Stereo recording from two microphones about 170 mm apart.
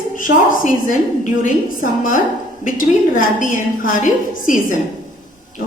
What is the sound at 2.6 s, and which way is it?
A woman's voice, 55° left (ahead or behind).